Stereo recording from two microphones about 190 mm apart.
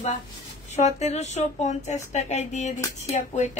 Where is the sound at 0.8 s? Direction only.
35° left (ahead or behind).